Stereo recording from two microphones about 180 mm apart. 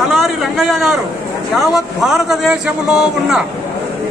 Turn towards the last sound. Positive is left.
turn(degrees=-5)  # may be behind; listen again after turning